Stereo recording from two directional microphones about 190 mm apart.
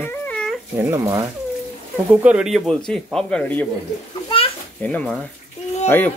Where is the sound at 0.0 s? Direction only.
10° left (ahead or behind).